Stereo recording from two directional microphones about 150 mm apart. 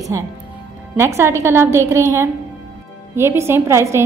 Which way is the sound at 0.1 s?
20° right (ahead or behind).